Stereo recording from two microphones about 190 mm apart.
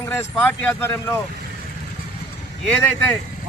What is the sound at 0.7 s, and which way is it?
Speech, 10° left (ahead or behind).